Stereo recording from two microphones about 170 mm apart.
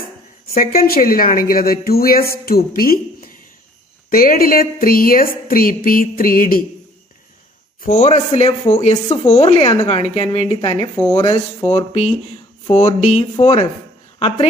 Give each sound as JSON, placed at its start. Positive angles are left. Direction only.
{"t": 0.6, "sound": "speech", "side_deg": 60}
{"t": 7.8, "sound": "speech", "side_deg": 45}
{"t": 11.7, "sound": "speech", "side_deg": 40}